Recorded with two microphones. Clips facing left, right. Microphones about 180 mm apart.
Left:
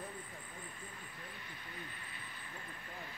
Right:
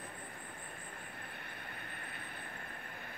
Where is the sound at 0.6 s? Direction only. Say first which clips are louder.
Right 1 dB; 55° right (ahead or behind).